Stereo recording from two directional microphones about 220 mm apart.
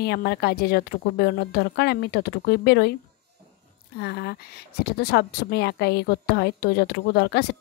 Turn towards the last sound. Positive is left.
turn(degrees=50)  # may be behind; listen again after turning